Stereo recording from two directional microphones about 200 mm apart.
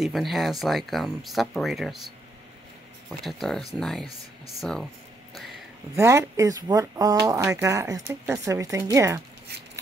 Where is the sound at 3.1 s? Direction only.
Centre (ahead or behind).